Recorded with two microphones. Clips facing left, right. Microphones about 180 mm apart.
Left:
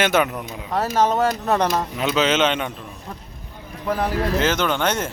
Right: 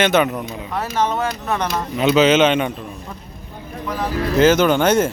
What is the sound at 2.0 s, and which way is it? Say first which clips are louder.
Speech: right 7 dB; 5° right (ahead or behind).